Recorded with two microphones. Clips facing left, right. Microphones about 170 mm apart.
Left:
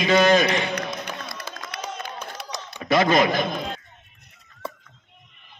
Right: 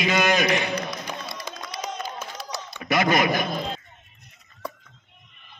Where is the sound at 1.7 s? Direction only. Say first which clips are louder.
Right 1 dB; 60° left (ahead or behind).